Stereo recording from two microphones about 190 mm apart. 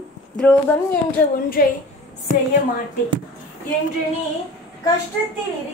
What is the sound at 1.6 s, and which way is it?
Speech, 55° left (ahead or behind).